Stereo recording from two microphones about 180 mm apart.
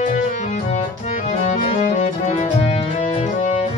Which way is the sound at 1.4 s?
35° left (ahead or behind).